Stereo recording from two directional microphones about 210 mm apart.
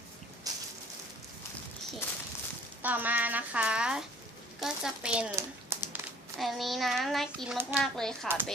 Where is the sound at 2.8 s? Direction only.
10° right (ahead or behind).